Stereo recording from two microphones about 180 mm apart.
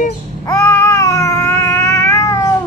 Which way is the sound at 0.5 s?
20° left (ahead or behind).